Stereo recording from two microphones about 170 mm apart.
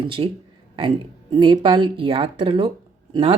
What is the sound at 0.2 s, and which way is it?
Speech, 30° right (ahead or behind).